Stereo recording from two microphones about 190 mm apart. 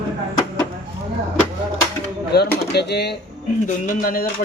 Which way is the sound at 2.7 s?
60° left (ahead or behind).